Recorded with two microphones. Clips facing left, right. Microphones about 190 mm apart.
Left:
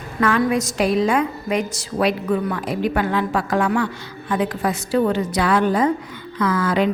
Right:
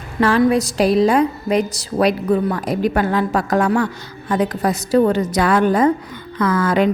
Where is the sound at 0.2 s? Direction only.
30° right (ahead or behind).